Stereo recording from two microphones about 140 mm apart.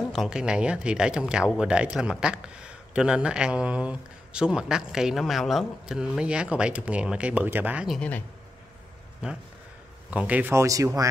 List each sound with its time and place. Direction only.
0.1 s speech: 5° right (ahead or behind)
9.2 s speech: 5° right (ahead or behind); by 11.1 s 25° right (ahead or behind)